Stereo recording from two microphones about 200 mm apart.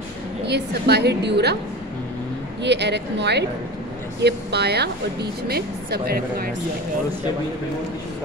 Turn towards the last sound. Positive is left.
turn(degrees=-50)  # may be behind; listen again after turning